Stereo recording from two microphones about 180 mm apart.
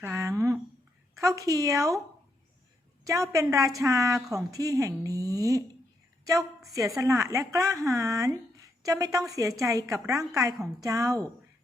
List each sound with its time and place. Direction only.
0.0 s a sound: 15° right (ahead or behind)
1.2 s speech: 20° right (ahead or behind)
3.0 s speech: 20° right (ahead or behind)
6.7 s speech: 20° right (ahead or behind)